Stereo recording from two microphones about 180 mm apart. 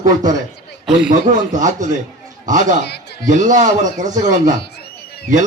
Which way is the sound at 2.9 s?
65° left (ahead or behind).